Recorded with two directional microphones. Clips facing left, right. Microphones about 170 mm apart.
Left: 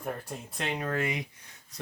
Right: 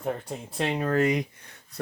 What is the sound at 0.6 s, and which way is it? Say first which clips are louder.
Speech: right 7 dB; 35° right (ahead or behind).